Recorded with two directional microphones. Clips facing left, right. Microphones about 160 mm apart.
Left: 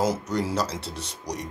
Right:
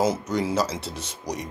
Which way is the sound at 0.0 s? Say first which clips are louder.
Right 2 dB; centre (ahead or behind).